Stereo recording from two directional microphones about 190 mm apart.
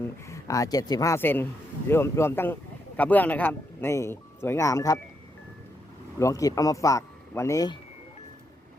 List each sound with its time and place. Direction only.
0.0 s speech: 15° left (ahead or behind)
6.1 s speech: 15° left (ahead or behind)